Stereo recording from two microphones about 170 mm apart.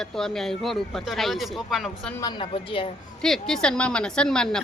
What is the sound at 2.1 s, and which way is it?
Speech, 25° left (ahead or behind).